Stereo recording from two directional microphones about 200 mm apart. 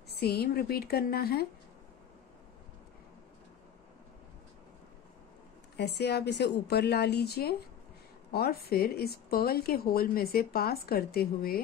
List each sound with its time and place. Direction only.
0.2 s speech: 50° left (ahead or behind)
5.8 s a woman's voice: 55° left (ahead or behind)